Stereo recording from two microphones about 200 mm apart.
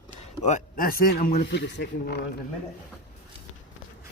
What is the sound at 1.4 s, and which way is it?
Speech, 60° left (ahead or behind).